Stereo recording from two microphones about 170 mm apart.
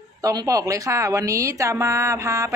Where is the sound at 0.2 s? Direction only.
20° right (ahead or behind).